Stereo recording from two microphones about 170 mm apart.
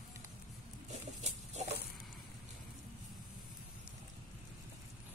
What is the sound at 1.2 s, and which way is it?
Pig, 40° right (ahead or behind).